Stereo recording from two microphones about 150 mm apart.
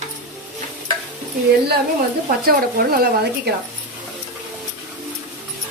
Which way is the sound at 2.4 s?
90° right.